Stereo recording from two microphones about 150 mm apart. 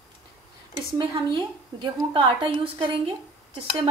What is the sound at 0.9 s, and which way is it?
Speech, 30° right (ahead or behind).